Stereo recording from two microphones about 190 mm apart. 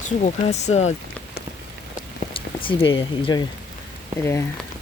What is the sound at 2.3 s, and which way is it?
Speech, 25° left (ahead or behind).